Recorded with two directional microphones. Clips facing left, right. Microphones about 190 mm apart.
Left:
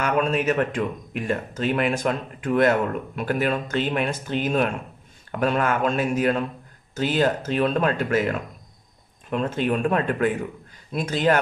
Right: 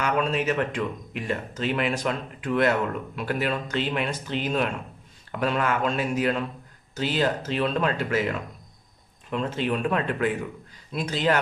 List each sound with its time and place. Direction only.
0.0 s a man's voice: 50° left (ahead or behind)